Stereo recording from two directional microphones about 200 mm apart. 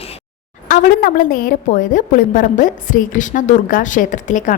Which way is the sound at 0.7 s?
45° left (ahead or behind).